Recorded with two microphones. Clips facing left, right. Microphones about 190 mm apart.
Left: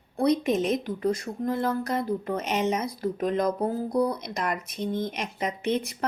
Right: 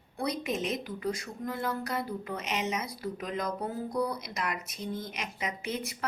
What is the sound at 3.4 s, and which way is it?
Music, 30° left (ahead or behind).